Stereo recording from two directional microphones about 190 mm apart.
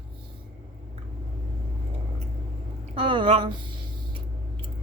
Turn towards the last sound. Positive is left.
turn(degrees=-25)  # may be behind; listen again after turning